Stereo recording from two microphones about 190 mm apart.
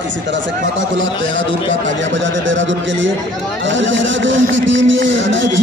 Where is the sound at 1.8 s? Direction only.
80° right.